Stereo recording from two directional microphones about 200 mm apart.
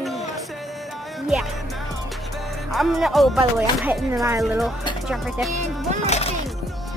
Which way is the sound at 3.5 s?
10° right (ahead or behind).